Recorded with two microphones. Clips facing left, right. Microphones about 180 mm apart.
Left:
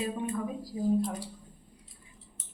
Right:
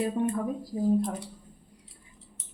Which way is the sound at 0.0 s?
55° right (ahead or behind).